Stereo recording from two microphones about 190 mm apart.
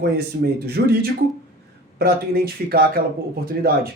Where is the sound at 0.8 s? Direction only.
55° right (ahead or behind).